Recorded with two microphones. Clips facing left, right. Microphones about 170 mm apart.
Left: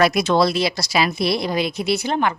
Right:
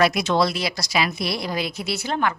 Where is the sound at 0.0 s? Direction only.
40° left (ahead or behind).